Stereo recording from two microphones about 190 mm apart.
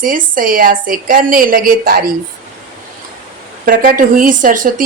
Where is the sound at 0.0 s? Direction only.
45° right (ahead or behind).